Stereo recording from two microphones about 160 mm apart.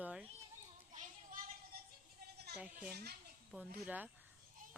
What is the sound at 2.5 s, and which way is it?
Speech, 10° right (ahead or behind).